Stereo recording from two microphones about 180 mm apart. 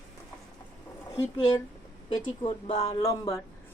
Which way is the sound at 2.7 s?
20° left (ahead or behind).